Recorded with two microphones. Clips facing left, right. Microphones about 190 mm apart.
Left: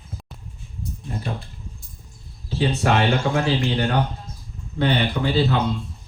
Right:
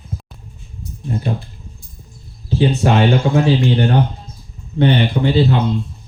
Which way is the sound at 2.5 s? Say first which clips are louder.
Right 5 dB; 25° right (ahead or behind).